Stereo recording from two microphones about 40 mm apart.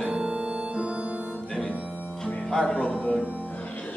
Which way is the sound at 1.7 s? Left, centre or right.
Right.